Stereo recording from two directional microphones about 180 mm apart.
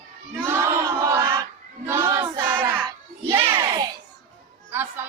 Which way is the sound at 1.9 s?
15° right (ahead or behind).